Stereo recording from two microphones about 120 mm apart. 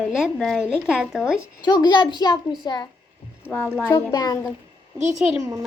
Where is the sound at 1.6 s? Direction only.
40° left (ahead or behind).